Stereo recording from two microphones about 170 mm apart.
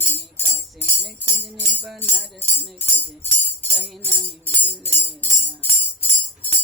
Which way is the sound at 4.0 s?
10° left (ahead or behind).